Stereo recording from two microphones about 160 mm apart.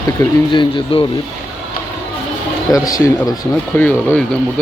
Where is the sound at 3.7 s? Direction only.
10° left (ahead or behind).